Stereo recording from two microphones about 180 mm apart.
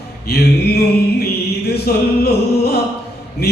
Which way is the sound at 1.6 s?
60° left (ahead or behind).